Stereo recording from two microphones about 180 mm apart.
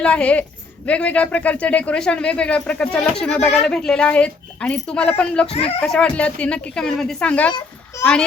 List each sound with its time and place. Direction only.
0.0 s speech: 5° left (ahead or behind)
5.5 s speech: 35° left (ahead or behind)
5.8 s a woman's voice: 5° left (ahead or behind)
7.9 s a child's voice: 15° left (ahead or behind)